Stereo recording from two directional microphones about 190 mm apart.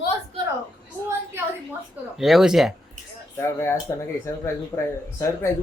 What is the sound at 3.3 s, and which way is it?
Speech, 15° left (ahead or behind).